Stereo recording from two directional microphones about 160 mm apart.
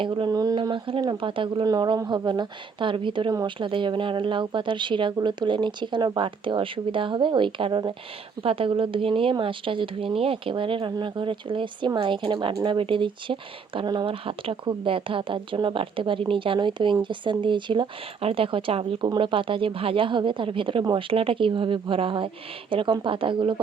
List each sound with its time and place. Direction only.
0.0 s speech: 30° right (ahead or behind)